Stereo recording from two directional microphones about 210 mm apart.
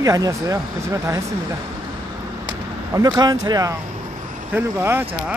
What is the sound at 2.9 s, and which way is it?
Speech, 15° right (ahead or behind).